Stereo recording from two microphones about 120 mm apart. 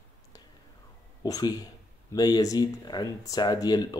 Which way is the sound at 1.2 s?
30° left (ahead or behind).